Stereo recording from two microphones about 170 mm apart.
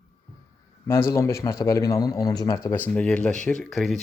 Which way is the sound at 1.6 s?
20° left (ahead or behind).